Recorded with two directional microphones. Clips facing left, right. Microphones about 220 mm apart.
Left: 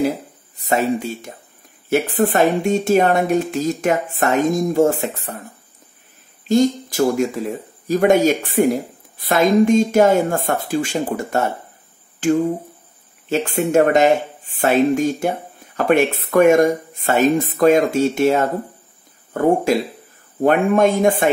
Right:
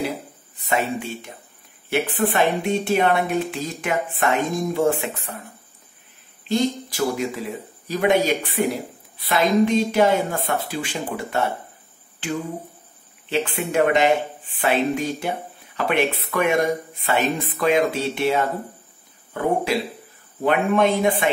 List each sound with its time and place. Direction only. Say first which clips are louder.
0.6 s speech: left 5 dB; 40° left (ahead or behind)
6.4 s speech: left 6 dB; 45° left (ahead or behind)